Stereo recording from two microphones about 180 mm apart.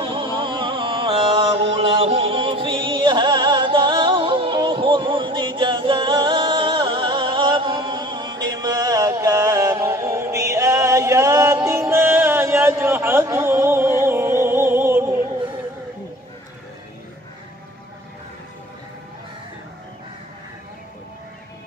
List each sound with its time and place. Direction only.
0.0 s music: 30° right (ahead or behind); by 15.1 s 15° right (ahead or behind)